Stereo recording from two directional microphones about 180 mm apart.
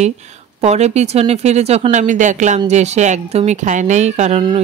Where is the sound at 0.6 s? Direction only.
40° right (ahead or behind).